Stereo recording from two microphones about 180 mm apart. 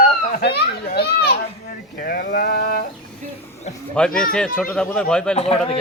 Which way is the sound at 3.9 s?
5° left (ahead or behind).